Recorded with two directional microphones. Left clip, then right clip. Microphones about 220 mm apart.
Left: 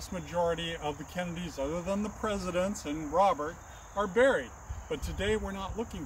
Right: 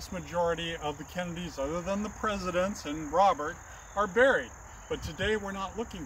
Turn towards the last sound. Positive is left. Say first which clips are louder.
# right 2 dB
turn(degrees=0)  # may be behind; listen again after turning